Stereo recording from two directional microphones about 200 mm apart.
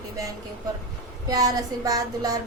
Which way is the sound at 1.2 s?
20° right (ahead or behind).